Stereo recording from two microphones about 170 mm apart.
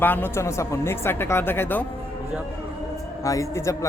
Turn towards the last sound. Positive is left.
turn(degrees=20)  # may be behind; listen again after turning